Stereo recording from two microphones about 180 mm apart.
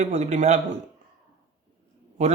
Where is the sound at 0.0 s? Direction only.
40° right (ahead or behind).